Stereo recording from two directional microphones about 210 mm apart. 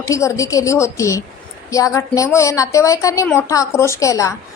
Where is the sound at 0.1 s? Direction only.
15° left (ahead or behind).